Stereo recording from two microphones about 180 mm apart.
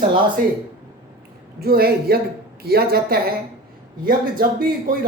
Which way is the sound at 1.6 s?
60° right (ahead or behind).